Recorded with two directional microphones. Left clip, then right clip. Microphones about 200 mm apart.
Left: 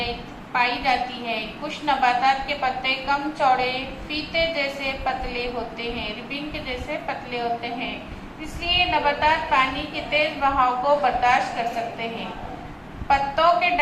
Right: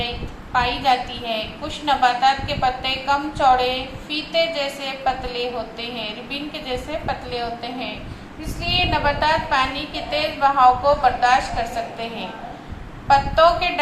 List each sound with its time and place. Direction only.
0.5 s a woman's voice: 40° right (ahead or behind)
8.6 s a woman's voice: 40° right (ahead or behind)
13.1 s a woman's voice: 40° right (ahead or behind)